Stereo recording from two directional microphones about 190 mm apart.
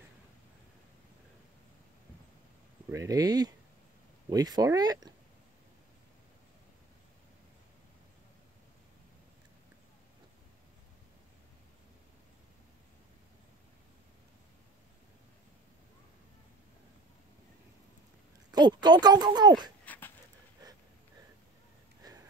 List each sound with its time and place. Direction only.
2.9 s speech: 15° right (ahead or behind)
18.5 s speech: 20° right (ahead or behind)
19.8 s dog: 10° left (ahead or behind)
22.0 s sniff: 20° right (ahead or behind)